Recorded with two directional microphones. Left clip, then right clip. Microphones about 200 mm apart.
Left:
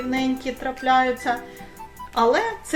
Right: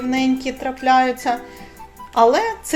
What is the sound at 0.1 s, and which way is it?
A woman's voice, 30° right (ahead or behind).